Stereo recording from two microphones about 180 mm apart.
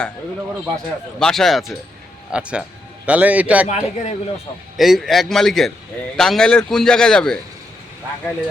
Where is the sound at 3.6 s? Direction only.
40° left (ahead or behind).